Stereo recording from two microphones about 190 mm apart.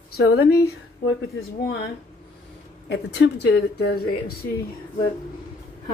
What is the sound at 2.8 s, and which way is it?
Speech, 65° left (ahead or behind).